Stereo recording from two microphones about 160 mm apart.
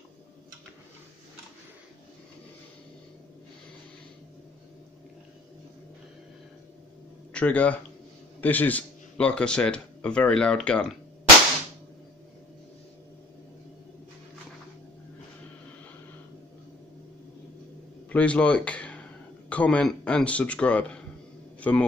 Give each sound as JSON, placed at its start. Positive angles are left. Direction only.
{"t": 7.3, "sound": "speech", "side_deg": 10}
{"t": 18.1, "sound": "a man's voice", "side_deg": 10}